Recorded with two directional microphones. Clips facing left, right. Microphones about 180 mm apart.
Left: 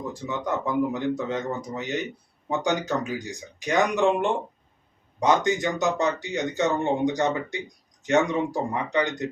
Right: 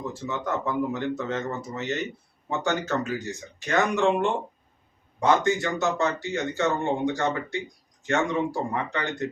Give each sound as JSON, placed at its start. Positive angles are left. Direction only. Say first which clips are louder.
{"t": 0.0, "sound": "speech", "louder": "left 1 dB", "side_deg": 15}